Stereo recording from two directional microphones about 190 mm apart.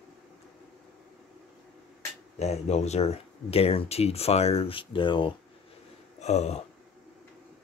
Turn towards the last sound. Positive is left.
turn(degrees=35)  # may be behind; listen again after turning